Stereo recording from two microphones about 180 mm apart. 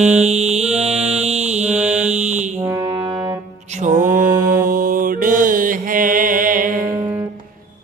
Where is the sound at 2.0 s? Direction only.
40° right (ahead or behind).